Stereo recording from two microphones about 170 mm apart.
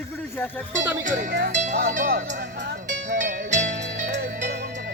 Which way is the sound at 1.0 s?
45° right (ahead or behind).